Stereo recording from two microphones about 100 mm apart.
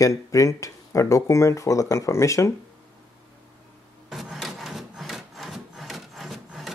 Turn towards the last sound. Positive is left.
turn(degrees=0)  # may be behind; listen again after turning